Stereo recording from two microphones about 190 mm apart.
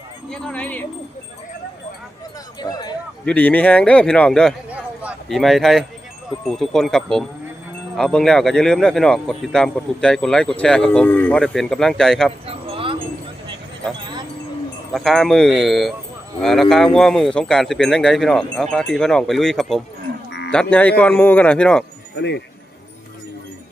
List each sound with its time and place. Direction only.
0.3 s speech: 5° left (ahead or behind)
2.6 s speech: 20° left (ahead or behind)
3.2 s speech: 5° left (ahead or behind)
4.7 s a sound: 5° right (ahead or behind)
6.4 s speech: centre (ahead or behind)
12.5 s wind chime: 30° right (ahead or behind)
14.9 s speech: centre (ahead or behind)
22.1 s speech: 65° left (ahead or behind)